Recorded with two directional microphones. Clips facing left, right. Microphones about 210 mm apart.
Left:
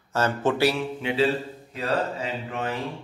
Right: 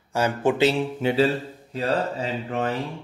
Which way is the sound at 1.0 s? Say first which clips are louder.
Right 2 dB; 40° right (ahead or behind).